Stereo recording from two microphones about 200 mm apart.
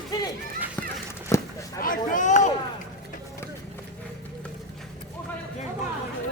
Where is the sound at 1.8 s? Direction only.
45° left (ahead or behind).